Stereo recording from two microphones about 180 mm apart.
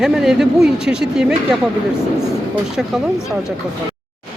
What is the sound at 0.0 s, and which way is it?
Speech, centre (ahead or behind).